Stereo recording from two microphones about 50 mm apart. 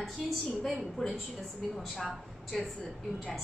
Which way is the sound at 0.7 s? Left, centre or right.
Centre.